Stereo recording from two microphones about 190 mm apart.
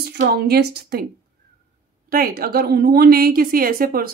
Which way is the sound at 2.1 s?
50° right (ahead or behind).